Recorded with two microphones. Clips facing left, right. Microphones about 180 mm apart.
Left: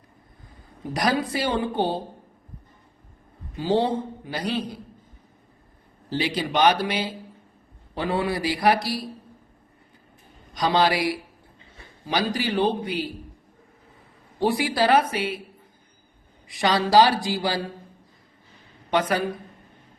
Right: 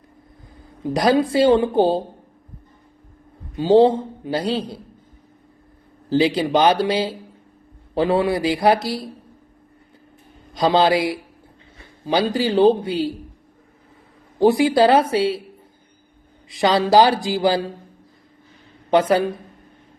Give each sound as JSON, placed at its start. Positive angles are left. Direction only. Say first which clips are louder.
{"t": 0.9, "sound": "speech", "louder": "right 8 dB", "side_deg": -25}
{"t": 3.6, "sound": "speech", "louder": "right 9 dB", "side_deg": -25}
{"t": 6.1, "sound": "speech", "louder": "right 9 dB", "side_deg": -25}
{"t": 10.5, "sound": "speech", "louder": "right 5 dB", "side_deg": -25}
{"t": 14.3, "sound": "speech", "louder": "right 8 dB", "side_deg": -20}
{"t": 16.5, "sound": "speech", "louder": "right 5 dB", "side_deg": -25}
{"t": 18.9, "sound": "speech", "louder": "right 7 dB", "side_deg": -25}